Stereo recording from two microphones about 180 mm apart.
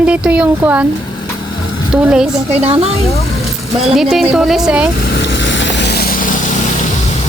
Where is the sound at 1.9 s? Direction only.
5° right (ahead or behind).